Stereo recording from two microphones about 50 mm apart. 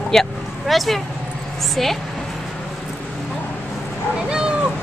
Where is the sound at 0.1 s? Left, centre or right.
Centre.